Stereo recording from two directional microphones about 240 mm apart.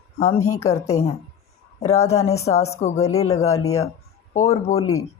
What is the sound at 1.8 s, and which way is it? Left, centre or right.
Speech, left.